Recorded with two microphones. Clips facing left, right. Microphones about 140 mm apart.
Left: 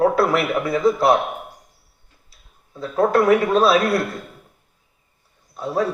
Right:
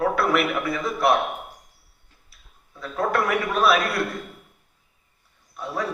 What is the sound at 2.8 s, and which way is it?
Speech, 25° left (ahead or behind).